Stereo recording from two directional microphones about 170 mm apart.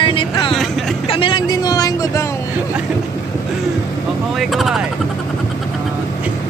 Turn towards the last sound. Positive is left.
turn(degrees=0)  # may be behind; listen again after turning